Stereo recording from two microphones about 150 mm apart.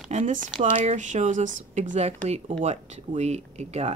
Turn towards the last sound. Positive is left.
turn(degrees=-45)  # may be behind; listen again after turning